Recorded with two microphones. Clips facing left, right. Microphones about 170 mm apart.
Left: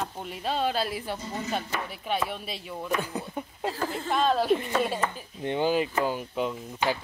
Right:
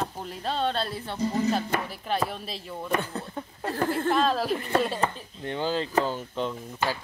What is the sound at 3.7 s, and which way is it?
Speech, 60° right (ahead or behind).